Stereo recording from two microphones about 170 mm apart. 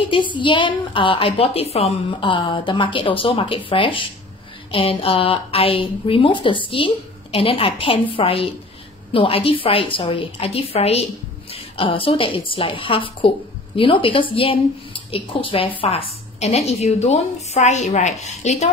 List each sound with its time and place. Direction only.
0.1 s a woman's voice: 30° left (ahead or behind)